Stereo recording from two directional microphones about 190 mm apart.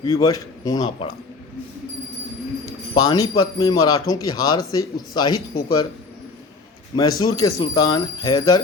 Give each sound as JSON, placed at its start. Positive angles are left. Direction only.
{"t": 0.0, "sound": "speech", "side_deg": 20}
{"t": 2.9, "sound": "speech", "side_deg": 20}
{"t": 6.9, "sound": "speech", "side_deg": 20}